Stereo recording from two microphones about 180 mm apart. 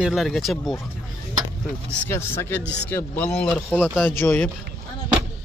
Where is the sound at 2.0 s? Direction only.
15° left (ahead or behind).